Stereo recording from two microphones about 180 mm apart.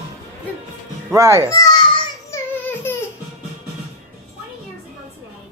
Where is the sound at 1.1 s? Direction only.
15° right (ahead or behind).